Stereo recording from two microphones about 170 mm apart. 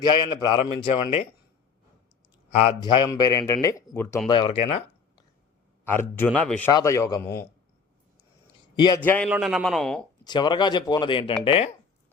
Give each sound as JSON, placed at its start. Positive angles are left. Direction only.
{"t": 0.0, "sound": "speech", "side_deg": 25}
{"t": 2.8, "sound": "a man's voice", "side_deg": 25}
{"t": 4.3, "sound": "speech", "side_deg": 30}
{"t": 5.8, "sound": "a man's voice", "side_deg": 15}
{"t": 6.7, "sound": "a man's voice", "side_deg": 20}
{"t": 8.7, "sound": "a man's voice", "side_deg": 25}
{"t": 9.0, "sound": "a man's voice", "side_deg": 10}
{"t": 9.3, "sound": "speech", "side_deg": -5}
{"t": 10.2, "sound": "speech", "side_deg": 25}